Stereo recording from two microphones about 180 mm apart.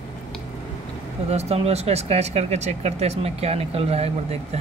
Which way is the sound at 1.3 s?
35° right (ahead or behind).